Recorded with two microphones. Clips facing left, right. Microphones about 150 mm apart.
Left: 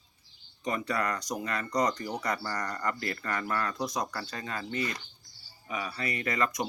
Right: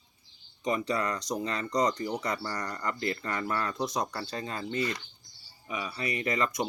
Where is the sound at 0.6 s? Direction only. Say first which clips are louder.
Right 2 dB; 20° right (ahead or behind).